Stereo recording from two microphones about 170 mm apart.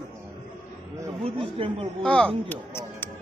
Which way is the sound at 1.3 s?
30° right (ahead or behind).